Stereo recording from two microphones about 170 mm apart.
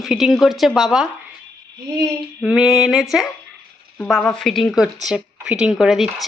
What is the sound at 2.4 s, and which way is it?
Speech, 5° right (ahead or behind).